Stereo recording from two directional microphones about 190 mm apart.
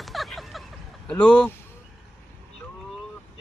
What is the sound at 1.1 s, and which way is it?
Speech, 5° left (ahead or behind).